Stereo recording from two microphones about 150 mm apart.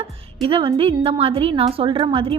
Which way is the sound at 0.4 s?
40° right (ahead or behind).